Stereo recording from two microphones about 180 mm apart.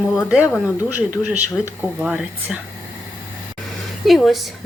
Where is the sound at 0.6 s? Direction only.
10° right (ahead or behind).